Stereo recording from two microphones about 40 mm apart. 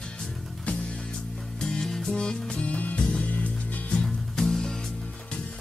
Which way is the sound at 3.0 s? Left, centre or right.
Left.